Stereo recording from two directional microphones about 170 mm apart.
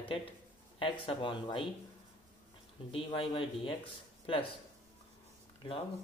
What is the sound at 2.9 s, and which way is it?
Speech, 30° left (ahead or behind).